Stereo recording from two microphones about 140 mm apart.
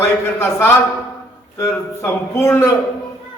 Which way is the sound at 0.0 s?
15° left (ahead or behind).